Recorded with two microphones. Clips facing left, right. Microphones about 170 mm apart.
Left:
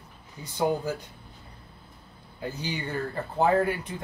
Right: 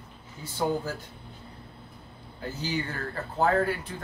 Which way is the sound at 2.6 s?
15° left (ahead or behind).